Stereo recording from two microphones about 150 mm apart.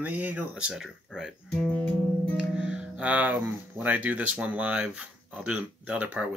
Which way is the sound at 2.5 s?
5° right (ahead or behind).